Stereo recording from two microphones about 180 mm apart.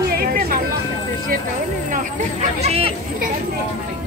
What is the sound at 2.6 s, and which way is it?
Speech, 35° right (ahead or behind).